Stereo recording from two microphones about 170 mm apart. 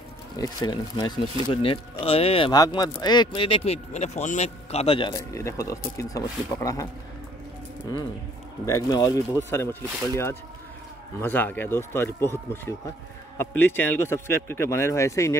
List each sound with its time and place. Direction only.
0.4 s speech: 20° left (ahead or behind)
5.1 s speech: 15° left (ahead or behind)
8.6 s speech: 20° left (ahead or behind)